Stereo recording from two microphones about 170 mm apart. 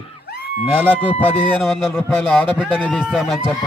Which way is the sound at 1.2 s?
5° left (ahead or behind).